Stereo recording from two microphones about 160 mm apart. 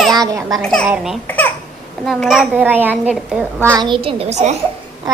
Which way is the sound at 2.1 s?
Centre (ahead or behind).